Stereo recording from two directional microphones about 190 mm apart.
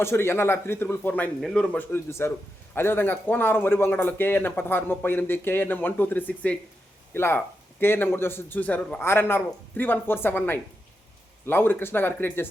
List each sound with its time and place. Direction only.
0.0 s speech: 15° left (ahead or behind)